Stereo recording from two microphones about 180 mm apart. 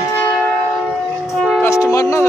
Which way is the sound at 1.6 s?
15° left (ahead or behind).